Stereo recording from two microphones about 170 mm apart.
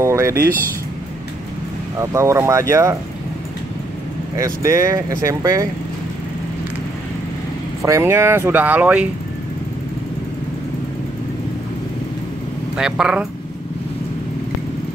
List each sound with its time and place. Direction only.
0.0 s a sound: 15° right (ahead or behind)
2.0 s speech: 15° right (ahead or behind)
4.4 s speech: 20° right (ahead or behind)
7.8 s speech: 15° right (ahead or behind)
12.7 s speech: 5° right (ahead or behind)